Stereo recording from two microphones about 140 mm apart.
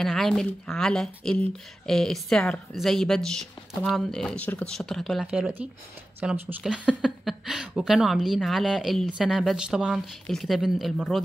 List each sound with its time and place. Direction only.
0.0 s speech: centre (ahead or behind); by 6.5 s 15° right (ahead or behind)
6.6 s speech: 5° right (ahead or behind)